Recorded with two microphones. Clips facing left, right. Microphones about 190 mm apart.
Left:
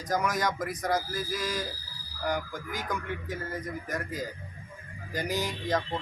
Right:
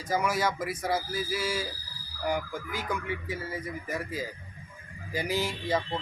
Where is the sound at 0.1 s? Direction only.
5° right (ahead or behind).